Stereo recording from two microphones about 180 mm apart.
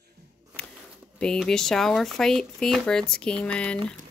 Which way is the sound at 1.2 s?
5° left (ahead or behind).